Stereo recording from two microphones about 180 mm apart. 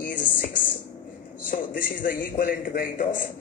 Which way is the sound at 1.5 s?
50° left (ahead or behind).